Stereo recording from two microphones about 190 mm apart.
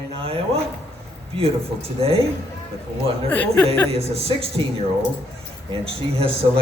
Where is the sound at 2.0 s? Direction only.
30° right (ahead or behind).